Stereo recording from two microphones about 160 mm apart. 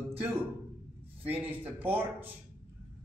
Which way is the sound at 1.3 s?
10° right (ahead or behind).